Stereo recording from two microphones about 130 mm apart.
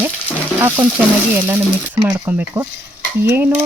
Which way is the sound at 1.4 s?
15° right (ahead or behind).